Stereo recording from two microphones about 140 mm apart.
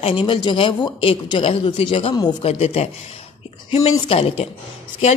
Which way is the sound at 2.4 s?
50° left (ahead or behind).